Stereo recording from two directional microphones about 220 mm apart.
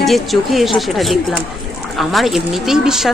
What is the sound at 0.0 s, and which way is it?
Speech, centre (ahead or behind).